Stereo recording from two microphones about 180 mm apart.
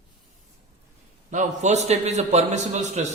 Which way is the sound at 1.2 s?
40° right (ahead or behind).